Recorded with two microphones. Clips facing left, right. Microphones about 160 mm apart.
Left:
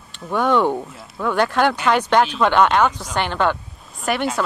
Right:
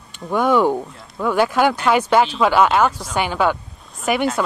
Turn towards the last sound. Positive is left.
turn(degrees=-5)  # may be behind; listen again after turning